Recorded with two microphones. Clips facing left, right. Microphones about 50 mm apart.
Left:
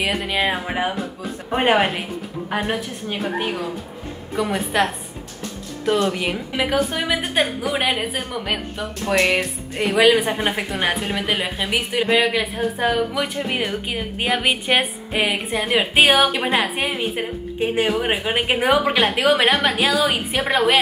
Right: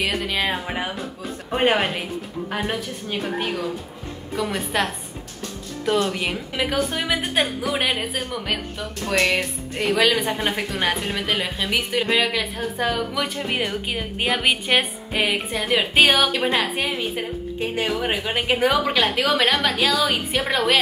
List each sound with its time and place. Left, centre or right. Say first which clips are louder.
0.0 s a woman's voice: left 2 dB; centre
6.0 s a woman's voice: left 3 dB; centre
19.5 s a woman's voice: left 2 dB; centre